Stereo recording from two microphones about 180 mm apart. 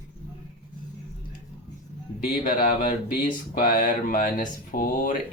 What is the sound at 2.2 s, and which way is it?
Speech, 50° left (ahead or behind).